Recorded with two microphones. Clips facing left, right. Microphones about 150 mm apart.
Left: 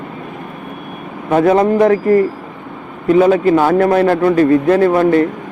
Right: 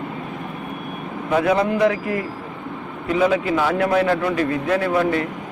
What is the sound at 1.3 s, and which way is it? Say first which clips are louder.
A man's voice: left 7 dB; 45° left (ahead or behind).